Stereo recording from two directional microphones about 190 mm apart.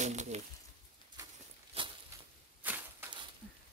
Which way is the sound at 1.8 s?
30° right (ahead or behind).